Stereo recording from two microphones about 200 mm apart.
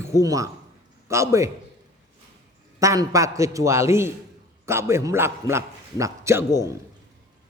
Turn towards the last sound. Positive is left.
turn(degrees=-15)  # may be behind; listen again after turning